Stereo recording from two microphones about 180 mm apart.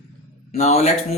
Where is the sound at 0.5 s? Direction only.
35° left (ahead or behind).